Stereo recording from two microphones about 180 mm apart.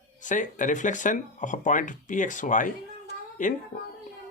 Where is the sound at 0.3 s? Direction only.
45° left (ahead or behind).